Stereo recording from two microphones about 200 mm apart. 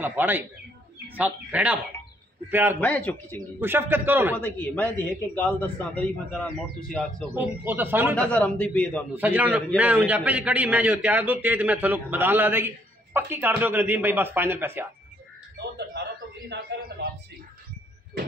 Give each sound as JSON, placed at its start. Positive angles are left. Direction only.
{"t": 0.0, "sound": "a man's voice", "side_deg": -10}
{"t": 2.8, "sound": "a man's voice", "side_deg": 5}
{"t": 3.3, "sound": "a man's voice", "side_deg": -10}
{"t": 4.4, "sound": "a man's voice", "side_deg": 10}
{"t": 7.3, "sound": "a man's voice", "side_deg": -10}
{"t": 8.2, "sound": "a man's voice", "side_deg": 5}
{"t": 9.1, "sound": "a man's voice", "side_deg": -10}
{"t": 15.5, "sound": "a man's voice", "side_deg": -60}